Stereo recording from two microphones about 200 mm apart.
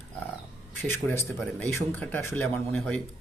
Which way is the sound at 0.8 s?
10° left (ahead or behind).